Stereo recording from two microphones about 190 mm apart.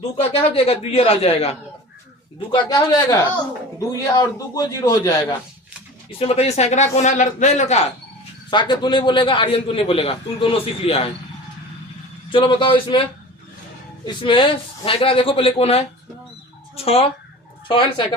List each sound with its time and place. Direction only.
0.2 s speech: 30° left (ahead or behind)
2.6 s a man's voice: 20° left (ahead or behind)
6.1 s speech: 30° left (ahead or behind)
8.4 s a man's voice: 25° left (ahead or behind)
12.3 s a man's voice: 25° left (ahead or behind)
14.0 s a man's voice: 25° left (ahead or behind)